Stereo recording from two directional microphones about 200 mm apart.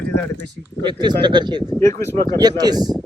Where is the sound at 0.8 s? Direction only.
20° right (ahead or behind).